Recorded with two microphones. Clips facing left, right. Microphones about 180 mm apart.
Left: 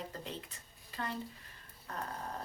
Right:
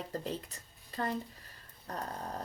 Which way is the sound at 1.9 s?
40° right (ahead or behind).